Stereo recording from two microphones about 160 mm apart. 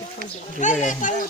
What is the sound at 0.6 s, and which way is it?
Speech, 50° left (ahead or behind).